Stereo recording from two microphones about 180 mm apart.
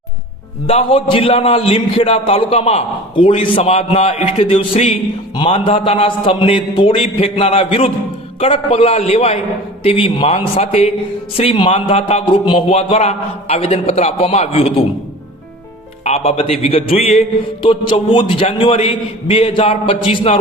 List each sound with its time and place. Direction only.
0.7 s a man's voice: 30° left (ahead or behind)
16.0 s a man's voice: 35° left (ahead or behind)